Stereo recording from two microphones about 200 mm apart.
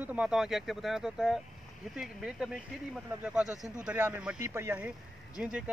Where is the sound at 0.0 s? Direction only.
5° right (ahead or behind).